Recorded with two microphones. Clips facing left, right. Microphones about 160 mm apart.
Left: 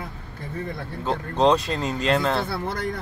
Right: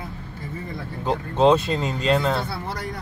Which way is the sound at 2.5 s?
55° left (ahead or behind).